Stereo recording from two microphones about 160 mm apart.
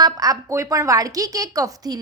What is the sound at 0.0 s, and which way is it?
A woman's voice, 25° right (ahead or behind).